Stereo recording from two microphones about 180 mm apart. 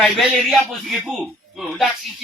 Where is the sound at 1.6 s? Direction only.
Centre (ahead or behind).